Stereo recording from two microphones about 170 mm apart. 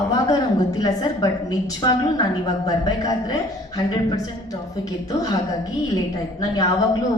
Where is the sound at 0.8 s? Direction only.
20° left (ahead or behind).